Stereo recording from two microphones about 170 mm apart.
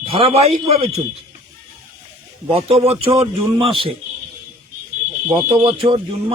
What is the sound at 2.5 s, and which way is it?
A man's voice, 35° right (ahead or behind).